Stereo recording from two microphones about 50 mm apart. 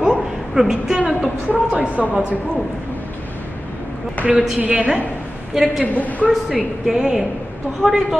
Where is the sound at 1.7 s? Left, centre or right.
Right.